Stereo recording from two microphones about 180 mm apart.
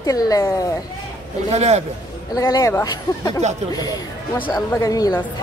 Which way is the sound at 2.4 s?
20° left (ahead or behind).